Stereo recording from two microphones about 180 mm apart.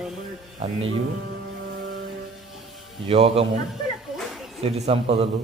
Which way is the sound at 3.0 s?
30° right (ahead or behind).